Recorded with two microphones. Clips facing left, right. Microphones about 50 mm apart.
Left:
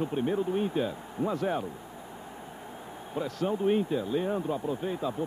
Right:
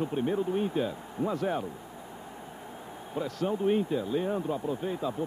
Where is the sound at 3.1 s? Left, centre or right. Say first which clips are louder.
Even; left.